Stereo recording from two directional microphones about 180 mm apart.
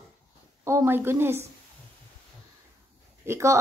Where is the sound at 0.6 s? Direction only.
15° right (ahead or behind).